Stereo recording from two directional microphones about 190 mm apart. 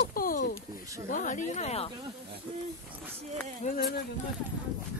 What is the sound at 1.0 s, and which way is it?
Speech, 40° left (ahead or behind).